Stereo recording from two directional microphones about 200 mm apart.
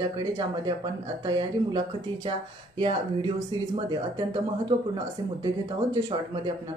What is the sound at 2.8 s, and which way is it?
Speech, 25° right (ahead or behind).